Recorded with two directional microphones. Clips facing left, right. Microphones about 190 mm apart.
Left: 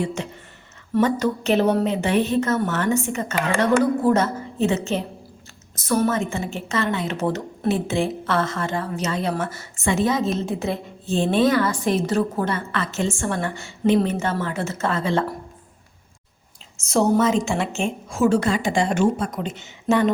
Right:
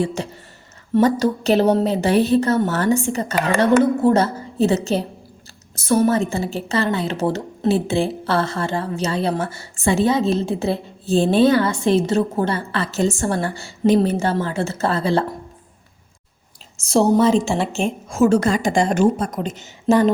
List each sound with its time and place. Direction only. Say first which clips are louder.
0.0 s a woman's voice: right 3 dB; 35° right (ahead or behind)
16.7 s a woman's voice: right 3 dB; 35° right (ahead or behind)